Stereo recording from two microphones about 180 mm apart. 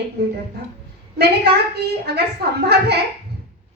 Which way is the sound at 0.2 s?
65° right (ahead or behind).